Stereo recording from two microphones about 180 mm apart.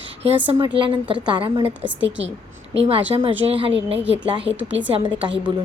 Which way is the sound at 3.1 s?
20° right (ahead or behind).